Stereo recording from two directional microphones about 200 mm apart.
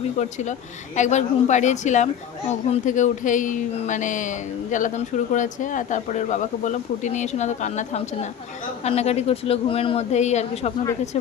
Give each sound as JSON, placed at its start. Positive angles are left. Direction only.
{"t": 0.2, "sound": "speech", "side_deg": 35}